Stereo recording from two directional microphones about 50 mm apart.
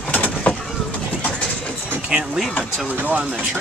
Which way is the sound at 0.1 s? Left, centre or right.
Left.